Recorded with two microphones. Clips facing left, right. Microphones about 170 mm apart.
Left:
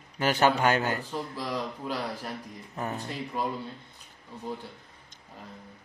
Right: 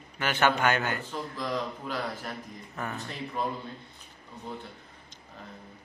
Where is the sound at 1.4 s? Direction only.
10° left (ahead or behind).